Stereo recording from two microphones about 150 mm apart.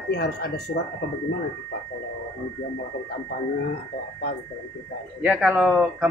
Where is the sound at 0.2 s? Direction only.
90° left.